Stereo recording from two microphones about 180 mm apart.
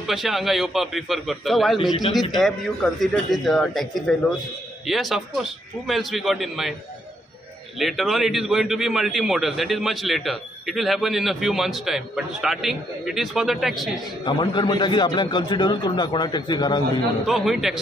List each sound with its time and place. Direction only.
0.0 s a man's voice: centre (ahead or behind)
1.8 s a man's voice: 25° left (ahead or behind)
2.1 s a man's voice: centre (ahead or behind)
7.8 s a man's voice: centre (ahead or behind)
14.2 s a man's voice: 25° left (ahead or behind)
17.3 s a man's voice: centre (ahead or behind)